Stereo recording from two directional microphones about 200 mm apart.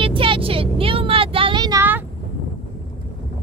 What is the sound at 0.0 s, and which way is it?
Vehicle, 25° right (ahead or behind).